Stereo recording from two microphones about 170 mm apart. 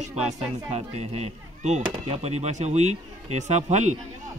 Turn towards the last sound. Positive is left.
turn(degrees=-40)  # may be behind; listen again after turning